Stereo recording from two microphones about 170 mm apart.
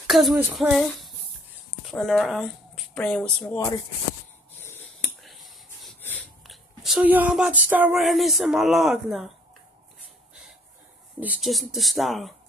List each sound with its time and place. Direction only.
0.0 s female singing: centre (ahead or behind)
0.4 s speech: 5° right (ahead or behind)
3.5 s speech: 20° left (ahead or behind)
4.6 s a sound: 15° left (ahead or behind)
5.2 s a sound: centre (ahead or behind)
6.4 s speech: centre (ahead or behind)
8.0 s speech: centre (ahead or behind)
11.1 s speech: 5° right (ahead or behind)